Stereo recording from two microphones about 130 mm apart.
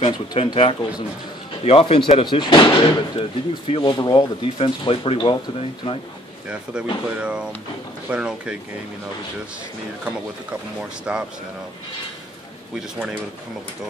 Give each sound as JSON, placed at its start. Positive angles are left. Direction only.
{"t": 0.0, "sound": "speech", "side_deg": 35}
{"t": 6.5, "sound": "speech", "side_deg": -10}
{"t": 10.8, "sound": "speech", "side_deg": -5}